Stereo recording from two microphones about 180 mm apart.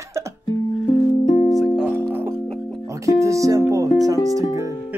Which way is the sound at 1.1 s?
35° left (ahead or behind).